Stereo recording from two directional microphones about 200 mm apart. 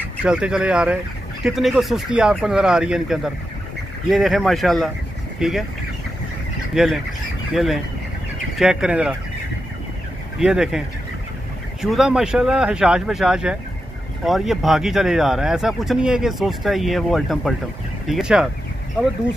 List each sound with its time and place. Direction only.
0.0 s speech: 5° right (ahead or behind)
6.7 s speech: centre (ahead or behind)
10.4 s speech: 5° right (ahead or behind)
11.8 s speech: centre (ahead or behind)